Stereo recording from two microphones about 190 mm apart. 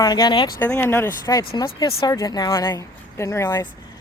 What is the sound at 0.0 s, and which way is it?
Speech, 20° left (ahead or behind).